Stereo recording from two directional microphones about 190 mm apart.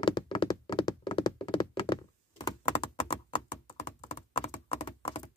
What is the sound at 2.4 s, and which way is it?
Computer keyboard, 25° left (ahead or behind).